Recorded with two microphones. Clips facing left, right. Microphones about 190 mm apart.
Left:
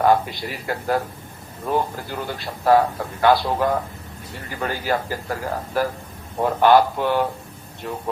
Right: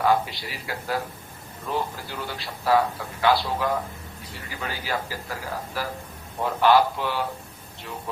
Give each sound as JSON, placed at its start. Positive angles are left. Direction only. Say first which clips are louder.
{"t": 0.0, "sound": "a man's voice", "louder": "left 4 dB", "side_deg": 50}